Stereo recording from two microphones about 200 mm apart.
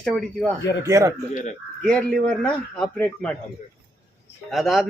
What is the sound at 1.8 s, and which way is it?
A man's voice, 5° left (ahead or behind).